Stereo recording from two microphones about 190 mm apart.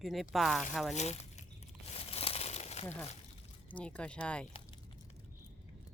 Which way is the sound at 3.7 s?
5° left (ahead or behind).